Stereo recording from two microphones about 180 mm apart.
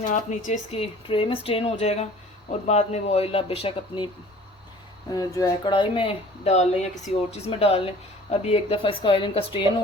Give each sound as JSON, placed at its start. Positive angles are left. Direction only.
{"t": 0.1, "sound": "speech", "side_deg": 45}
{"t": 5.1, "sound": "speech", "side_deg": 20}